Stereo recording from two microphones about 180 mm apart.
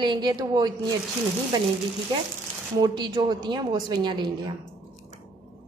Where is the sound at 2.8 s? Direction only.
25° right (ahead or behind).